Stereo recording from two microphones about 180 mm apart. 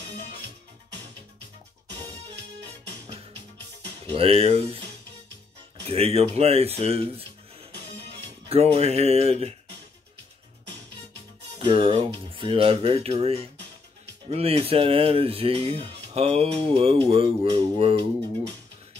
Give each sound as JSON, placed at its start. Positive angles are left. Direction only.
{"t": 4.1, "sound": "speech", "side_deg": -35}
{"t": 5.9, "sound": "speech", "side_deg": -35}
{"t": 8.5, "sound": "speech", "side_deg": -35}
{"t": 11.5, "sound": "speech", "side_deg": -30}